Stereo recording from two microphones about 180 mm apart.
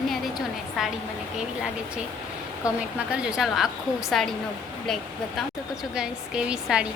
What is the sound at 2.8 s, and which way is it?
A woman's voice, 5° right (ahead or behind).